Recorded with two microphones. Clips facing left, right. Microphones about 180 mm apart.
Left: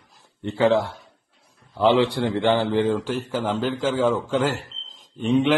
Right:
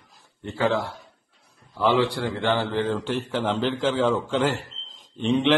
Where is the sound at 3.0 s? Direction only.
5° left (ahead or behind).